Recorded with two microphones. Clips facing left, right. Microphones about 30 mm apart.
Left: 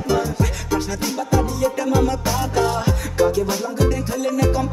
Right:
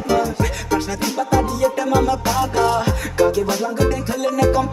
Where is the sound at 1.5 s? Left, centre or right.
Right.